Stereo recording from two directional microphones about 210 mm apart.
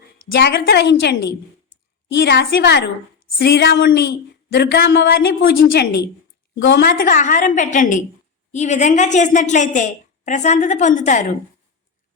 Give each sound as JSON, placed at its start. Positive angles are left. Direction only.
{"t": 0.3, "sound": "a woman's voice", "side_deg": 55}